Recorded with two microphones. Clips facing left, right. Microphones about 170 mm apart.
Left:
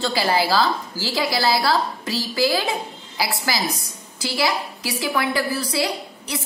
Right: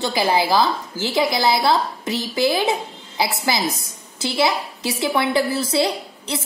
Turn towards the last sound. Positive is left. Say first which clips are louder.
# right 2 dB
turn(degrees=-25)  # may be behind; listen again after turning